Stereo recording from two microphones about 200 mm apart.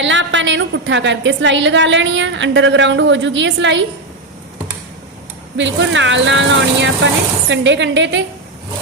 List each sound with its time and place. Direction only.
0.0 s a woman's voice: 65° right (ahead or behind)
5.5 s speech: 65° right (ahead or behind)